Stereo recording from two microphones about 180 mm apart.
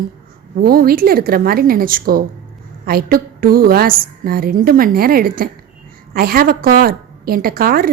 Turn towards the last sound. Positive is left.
turn(degrees=-55)  # may be behind; listen again after turning